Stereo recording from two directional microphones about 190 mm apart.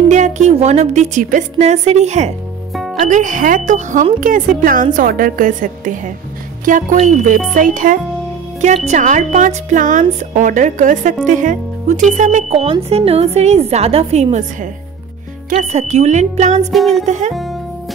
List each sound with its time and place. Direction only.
0.1 s a woman's voice: 40° right (ahead or behind)
2.7 s music: centre (ahead or behind)
3.1 s a woman's voice: 40° right (ahead or behind)
16.7 s music: centre (ahead or behind)
17.0 s a woman's voice: 40° right (ahead or behind)